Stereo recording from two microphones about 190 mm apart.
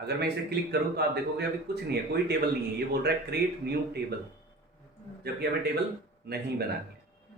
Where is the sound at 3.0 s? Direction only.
60° right (ahead or behind).